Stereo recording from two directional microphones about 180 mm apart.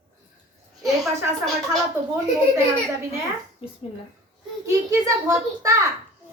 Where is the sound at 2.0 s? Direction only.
15° right (ahead or behind).